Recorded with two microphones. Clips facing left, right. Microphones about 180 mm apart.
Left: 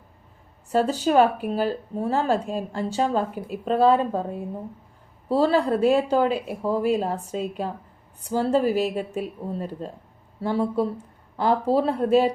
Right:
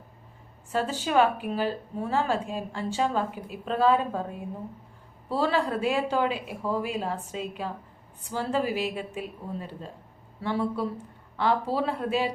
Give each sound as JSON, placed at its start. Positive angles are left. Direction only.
{"t": 0.7, "sound": "speech", "side_deg": 40}
{"t": 5.3, "sound": "speech", "side_deg": 40}